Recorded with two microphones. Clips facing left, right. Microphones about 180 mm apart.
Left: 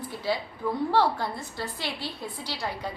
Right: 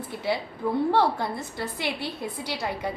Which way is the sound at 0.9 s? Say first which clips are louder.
Right 1 dB; 20° right (ahead or behind).